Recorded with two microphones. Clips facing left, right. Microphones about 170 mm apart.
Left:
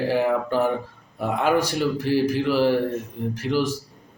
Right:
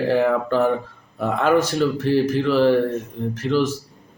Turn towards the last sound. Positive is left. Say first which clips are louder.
# right 3 dB
turn(degrees=10)  # may be behind; listen again after turning